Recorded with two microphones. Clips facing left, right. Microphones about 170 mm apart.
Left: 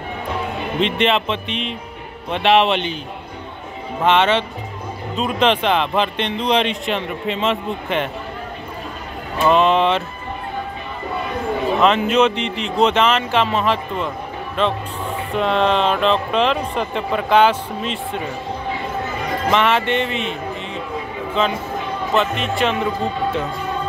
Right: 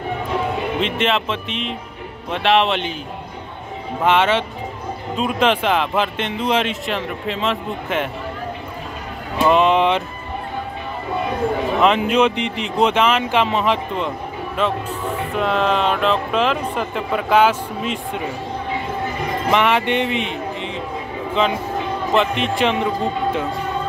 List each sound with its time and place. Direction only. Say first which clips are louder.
0.7 s speech: left 5 dB; centre (ahead or behind)
4.0 s speech: left 1 dB; 10° right (ahead or behind)
9.5 s speech: even; 15° right (ahead or behind)
11.8 s speech: even; 10° right (ahead or behind)
19.5 s speech: even; 15° right (ahead or behind)
22.1 s speech: right 1 dB; 20° right (ahead or behind)